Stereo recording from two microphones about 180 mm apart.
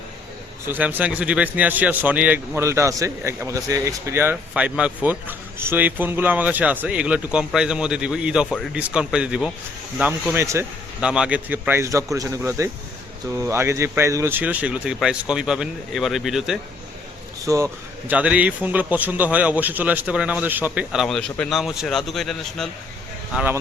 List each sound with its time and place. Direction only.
0.7 s a man's voice: 10° right (ahead or behind)
17.4 s a man's voice: 15° right (ahead or behind); by 22.7 s centre (ahead or behind)
23.3 s a man's voice: 10° right (ahead or behind)